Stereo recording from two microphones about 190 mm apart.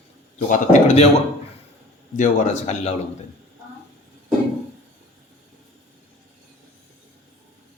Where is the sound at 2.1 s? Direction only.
40° left (ahead or behind).